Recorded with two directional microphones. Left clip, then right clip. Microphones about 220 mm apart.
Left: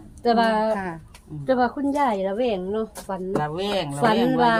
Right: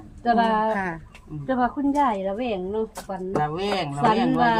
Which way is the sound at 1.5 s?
50° left (ahead or behind).